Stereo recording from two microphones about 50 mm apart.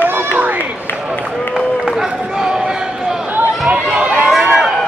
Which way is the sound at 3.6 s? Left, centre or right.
Right.